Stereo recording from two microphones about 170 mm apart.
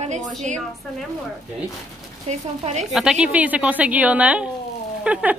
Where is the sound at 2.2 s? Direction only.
40° right (ahead or behind).